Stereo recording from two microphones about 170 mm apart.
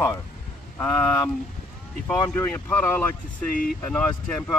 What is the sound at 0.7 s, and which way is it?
Speech, 15° left (ahead or behind).